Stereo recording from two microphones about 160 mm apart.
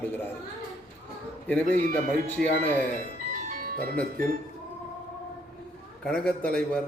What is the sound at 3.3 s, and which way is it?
Ice cream truck, 55° right (ahead or behind).